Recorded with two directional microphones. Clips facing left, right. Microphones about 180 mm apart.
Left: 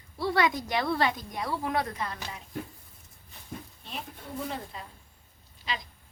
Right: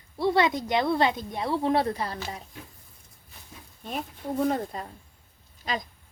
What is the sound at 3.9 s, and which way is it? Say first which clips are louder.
Speech: right 9 dB; 45° right (ahead or behind).